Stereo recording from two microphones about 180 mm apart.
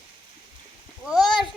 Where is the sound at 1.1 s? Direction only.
Centre (ahead or behind).